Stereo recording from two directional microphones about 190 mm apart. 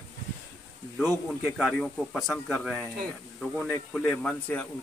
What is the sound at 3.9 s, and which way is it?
Speech, 5° left (ahead or behind).